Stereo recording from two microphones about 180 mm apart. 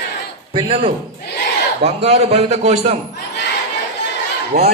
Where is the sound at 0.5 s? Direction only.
30° right (ahead or behind).